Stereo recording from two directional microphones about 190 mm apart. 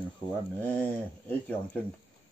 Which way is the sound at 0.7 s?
10° left (ahead or behind).